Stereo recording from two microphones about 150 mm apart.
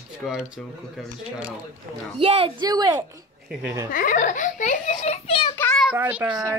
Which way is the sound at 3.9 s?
60° left (ahead or behind).